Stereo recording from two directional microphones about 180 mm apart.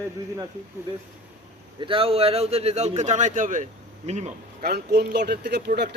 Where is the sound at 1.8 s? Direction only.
30° right (ahead or behind).